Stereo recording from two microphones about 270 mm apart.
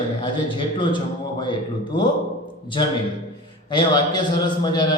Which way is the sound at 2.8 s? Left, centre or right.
Centre.